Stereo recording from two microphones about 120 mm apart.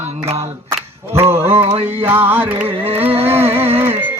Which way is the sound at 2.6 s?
55° right (ahead or behind).